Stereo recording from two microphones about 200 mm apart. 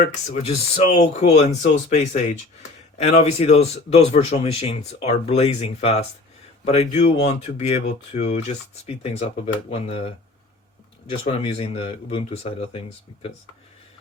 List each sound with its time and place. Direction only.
0.0 s speech: 35° left (ahead or behind)
11.3 s speech: 30° left (ahead or behind)